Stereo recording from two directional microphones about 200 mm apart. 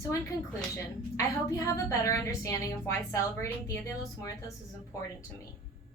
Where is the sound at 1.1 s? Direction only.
15° left (ahead or behind).